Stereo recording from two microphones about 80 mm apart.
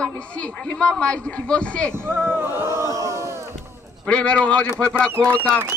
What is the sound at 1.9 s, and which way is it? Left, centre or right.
Speech, right.